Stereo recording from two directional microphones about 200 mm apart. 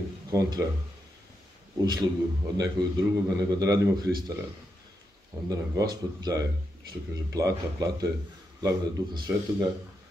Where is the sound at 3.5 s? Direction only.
20° right (ahead or behind).